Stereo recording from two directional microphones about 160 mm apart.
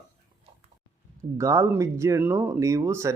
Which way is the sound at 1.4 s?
20° right (ahead or behind).